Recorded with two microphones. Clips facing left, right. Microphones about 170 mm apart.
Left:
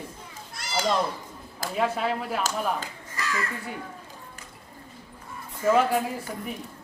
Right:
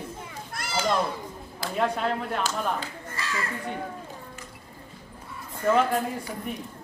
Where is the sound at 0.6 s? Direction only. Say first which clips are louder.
Right 2 dB; 55° right (ahead or behind).